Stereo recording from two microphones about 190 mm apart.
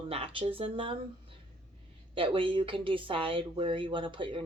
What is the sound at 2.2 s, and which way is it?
Speech, 25° right (ahead or behind).